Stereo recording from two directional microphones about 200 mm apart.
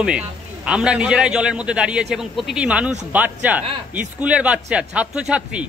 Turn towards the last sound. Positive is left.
turn(degrees=-5)  # may be behind; listen again after turning